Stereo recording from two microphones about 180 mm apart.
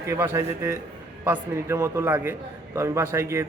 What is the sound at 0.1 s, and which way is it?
A man's voice, 15° right (ahead or behind).